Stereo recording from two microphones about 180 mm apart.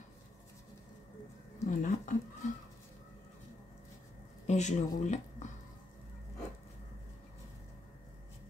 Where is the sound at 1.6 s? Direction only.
45° left (ahead or behind).